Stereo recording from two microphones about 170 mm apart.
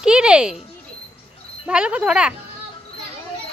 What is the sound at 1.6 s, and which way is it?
Speech, 5° right (ahead or behind).